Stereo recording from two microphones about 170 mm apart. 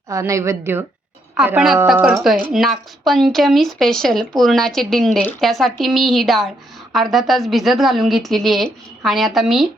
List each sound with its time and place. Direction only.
0.1 s a woman's voice: 20° right (ahead or behind); by 9.6 s centre (ahead or behind)